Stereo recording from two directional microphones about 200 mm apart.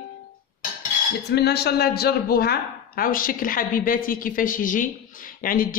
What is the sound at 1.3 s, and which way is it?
A man's voice, 55° left (ahead or behind).